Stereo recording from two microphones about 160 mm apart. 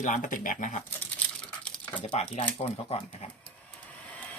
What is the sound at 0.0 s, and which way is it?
Speech, 55° left (ahead or behind).